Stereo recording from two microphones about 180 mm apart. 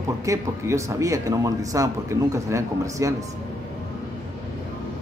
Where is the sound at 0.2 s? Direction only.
15° right (ahead or behind).